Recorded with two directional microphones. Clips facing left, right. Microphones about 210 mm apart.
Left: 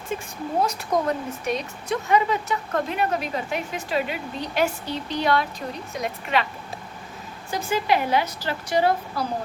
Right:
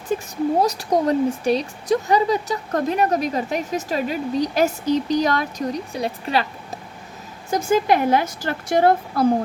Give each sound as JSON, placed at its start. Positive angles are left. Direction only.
{"t": 0.1, "sound": "a sound", "side_deg": -40}
{"t": 0.6, "sound": "speech", "side_deg": -35}
{"t": 7.5, "sound": "a woman's voice", "side_deg": -50}